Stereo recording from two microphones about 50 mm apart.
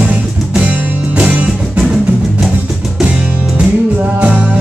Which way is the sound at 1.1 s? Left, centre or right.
Right.